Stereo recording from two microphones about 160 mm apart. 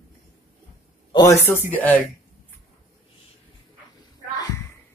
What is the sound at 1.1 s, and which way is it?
Speech, 20° left (ahead or behind).